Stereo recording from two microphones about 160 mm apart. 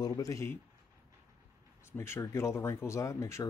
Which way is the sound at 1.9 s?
15° left (ahead or behind).